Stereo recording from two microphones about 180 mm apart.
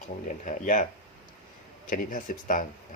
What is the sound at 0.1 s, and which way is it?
Speech, 45° left (ahead or behind).